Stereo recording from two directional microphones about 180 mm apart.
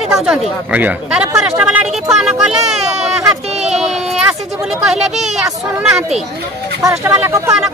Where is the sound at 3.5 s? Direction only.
40° right (ahead or behind).